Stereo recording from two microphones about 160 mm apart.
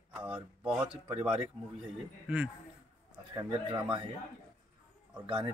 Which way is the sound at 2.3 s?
5° right (ahead or behind).